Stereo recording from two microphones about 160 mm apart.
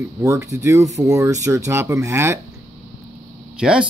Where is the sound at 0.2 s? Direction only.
20° right (ahead or behind).